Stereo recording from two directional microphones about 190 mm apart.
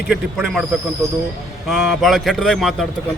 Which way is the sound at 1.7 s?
Centre (ahead or behind).